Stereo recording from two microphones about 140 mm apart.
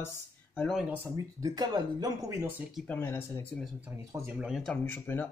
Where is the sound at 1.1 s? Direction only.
25° right (ahead or behind).